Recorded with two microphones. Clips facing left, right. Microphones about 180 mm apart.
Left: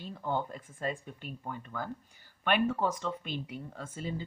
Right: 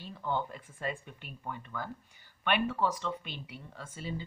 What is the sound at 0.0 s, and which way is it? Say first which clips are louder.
Speech: left 1 dB; 45° left (ahead or behind).